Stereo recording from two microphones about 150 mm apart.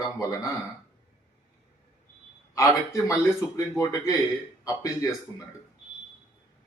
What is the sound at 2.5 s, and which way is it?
Speech, 20° left (ahead or behind).